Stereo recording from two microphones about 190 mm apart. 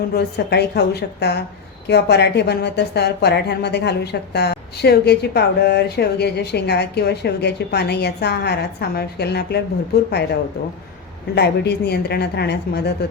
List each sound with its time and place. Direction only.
0.1 s a woman's voice: 60° left (ahead or behind)
11.3 s a woman's voice: 60° left (ahead or behind)